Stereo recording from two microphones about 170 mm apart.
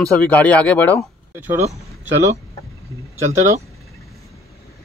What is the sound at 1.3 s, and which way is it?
Speech, 15° right (ahead or behind).